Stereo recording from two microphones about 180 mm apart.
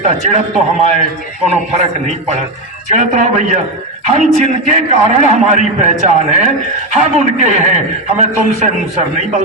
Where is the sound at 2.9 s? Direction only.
40° right (ahead or behind).